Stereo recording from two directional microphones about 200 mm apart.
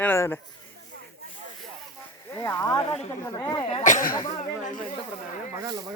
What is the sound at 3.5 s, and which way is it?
Speech, 25° left (ahead or behind).